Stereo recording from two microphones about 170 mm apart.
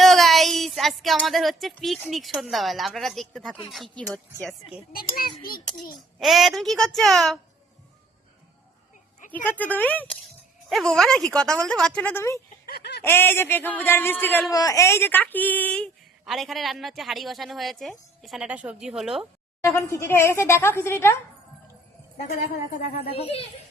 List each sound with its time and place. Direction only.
0.0 s speech: centre (ahead or behind)
5.4 s a child's voice: 60° left (ahead or behind)
6.1 s speech: centre (ahead or behind)
9.3 s a woman's voice: 10° left (ahead or behind)
12.6 s fowl: 70° left (ahead or behind)
13.1 s a woman's voice: 15° left (ahead or behind); by 19.3 s 5° right (ahead or behind)
19.6 s a woman's voice: 15° left (ahead or behind)
23.0 s a child's voice: 35° left (ahead or behind)